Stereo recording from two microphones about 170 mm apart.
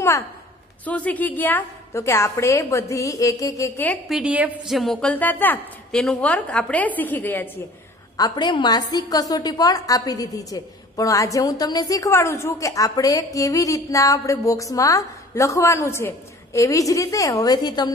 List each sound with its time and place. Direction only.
0.8 s a woman's voice: 10° left (ahead or behind)
4.1 s a woman's voice: 5° right (ahead or behind); by 7.6 s 10° left (ahead or behind)
8.2 s a woman's voice: 25° left (ahead or behind)